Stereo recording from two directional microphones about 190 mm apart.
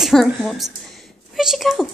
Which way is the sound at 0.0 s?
Centre (ahead or behind).